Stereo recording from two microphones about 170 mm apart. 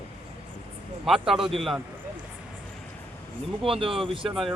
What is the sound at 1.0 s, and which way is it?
Speech, centre (ahead or behind).